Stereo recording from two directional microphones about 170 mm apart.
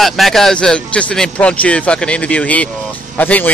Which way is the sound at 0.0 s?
Centre (ahead or behind).